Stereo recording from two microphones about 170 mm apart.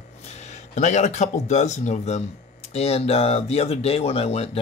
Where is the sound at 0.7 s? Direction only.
40° left (ahead or behind).